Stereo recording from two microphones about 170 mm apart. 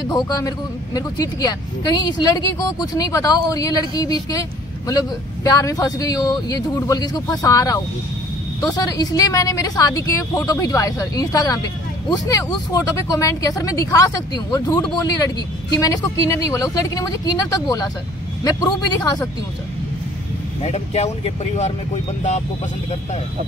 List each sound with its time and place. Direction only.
0.1 s speech: 25° left (ahead or behind)
20.6 s speech: 40° left (ahead or behind)